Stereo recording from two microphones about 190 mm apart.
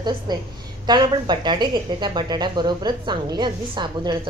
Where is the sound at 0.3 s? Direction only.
20° right (ahead or behind).